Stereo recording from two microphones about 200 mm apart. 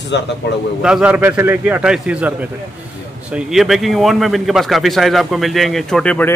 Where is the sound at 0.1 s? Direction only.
60° left (ahead or behind).